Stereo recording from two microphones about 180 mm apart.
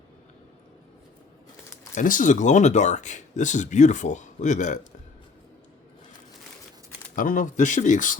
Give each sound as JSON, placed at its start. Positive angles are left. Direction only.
{"t": 2.0, "sound": "speech", "side_deg": 45}
{"t": 7.2, "sound": "speech", "side_deg": 50}